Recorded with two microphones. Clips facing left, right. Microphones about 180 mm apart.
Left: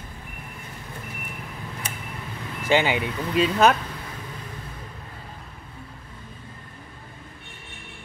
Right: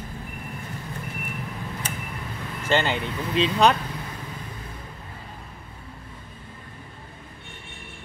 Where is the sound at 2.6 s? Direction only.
10° left (ahead or behind).